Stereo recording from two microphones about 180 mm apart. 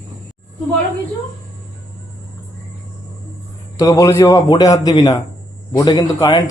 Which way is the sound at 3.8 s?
20° left (ahead or behind).